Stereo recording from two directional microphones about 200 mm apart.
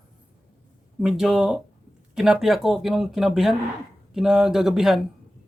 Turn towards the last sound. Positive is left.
turn(degrees=0)  # may be behind; listen again after turning